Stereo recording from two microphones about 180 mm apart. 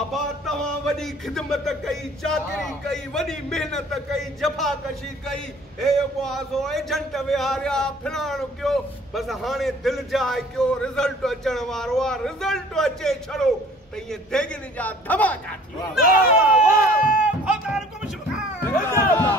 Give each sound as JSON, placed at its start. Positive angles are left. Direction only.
{"t": 0.1, "sound": "a man's voice", "side_deg": 0}
{"t": 16.0, "sound": "speech", "side_deg": 50}
{"t": 17.0, "sound": "a sound", "side_deg": -5}
{"t": 18.6, "sound": "speech", "side_deg": 15}